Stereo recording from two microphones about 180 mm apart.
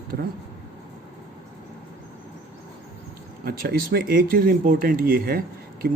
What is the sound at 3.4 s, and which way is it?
Speech, 55° right (ahead or behind).